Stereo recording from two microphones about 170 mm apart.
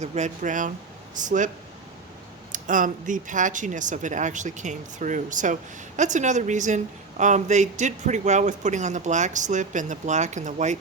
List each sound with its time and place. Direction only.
0.0 s a woman's voice: 45° right (ahead or behind)
2.5 s a woman's voice: 50° right (ahead or behind)